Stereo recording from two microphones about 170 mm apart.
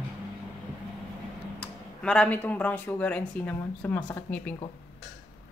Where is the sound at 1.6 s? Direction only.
5° left (ahead or behind).